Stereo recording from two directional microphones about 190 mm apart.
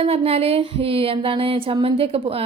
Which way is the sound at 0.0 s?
30° right (ahead or behind).